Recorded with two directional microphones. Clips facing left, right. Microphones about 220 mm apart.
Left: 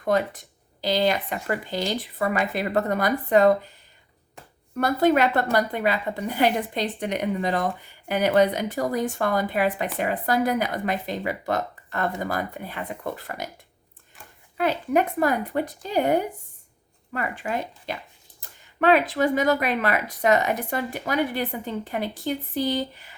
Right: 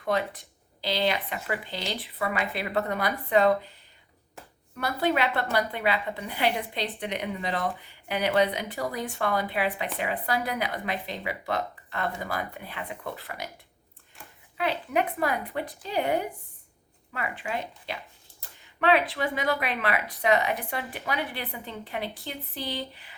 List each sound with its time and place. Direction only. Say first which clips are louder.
0.0 s speech: left 5 dB; 45° left (ahead or behind)
4.8 s speech: left 6 dB; 45° left (ahead or behind)
14.6 s speech: left 5 dB; 45° left (ahead or behind)